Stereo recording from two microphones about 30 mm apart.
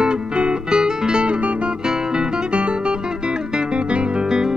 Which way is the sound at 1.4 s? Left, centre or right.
Right.